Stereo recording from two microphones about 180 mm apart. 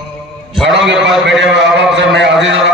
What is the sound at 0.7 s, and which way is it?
A man's voice, 80° right.